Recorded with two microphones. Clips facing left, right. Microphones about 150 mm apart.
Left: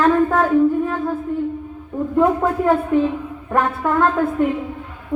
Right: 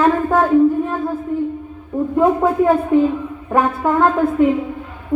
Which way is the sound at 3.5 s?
10° right (ahead or behind).